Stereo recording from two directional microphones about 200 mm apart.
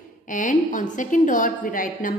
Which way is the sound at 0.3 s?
40° left (ahead or behind).